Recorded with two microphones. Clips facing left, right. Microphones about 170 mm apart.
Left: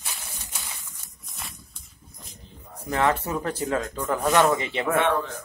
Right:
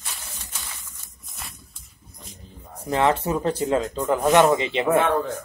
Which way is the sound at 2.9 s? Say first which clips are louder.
Right 3 dB; 20° right (ahead or behind).